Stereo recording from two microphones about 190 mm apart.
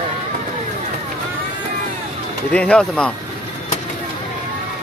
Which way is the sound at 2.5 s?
5° left (ahead or behind).